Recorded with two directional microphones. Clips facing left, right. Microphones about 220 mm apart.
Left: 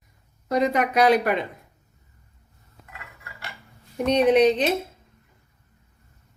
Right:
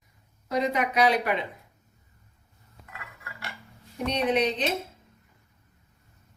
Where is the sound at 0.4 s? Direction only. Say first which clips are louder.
Left 4 dB; 45° left (ahead or behind).